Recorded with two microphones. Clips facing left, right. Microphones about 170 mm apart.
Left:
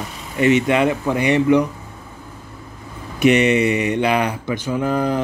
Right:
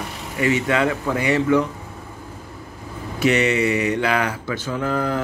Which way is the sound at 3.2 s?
20° left (ahead or behind).